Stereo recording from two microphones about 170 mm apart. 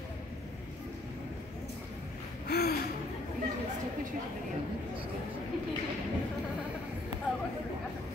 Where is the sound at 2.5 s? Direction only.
65° left (ahead or behind).